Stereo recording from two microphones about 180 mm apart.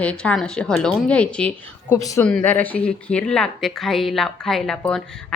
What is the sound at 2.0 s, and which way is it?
Speech, 20° left (ahead or behind).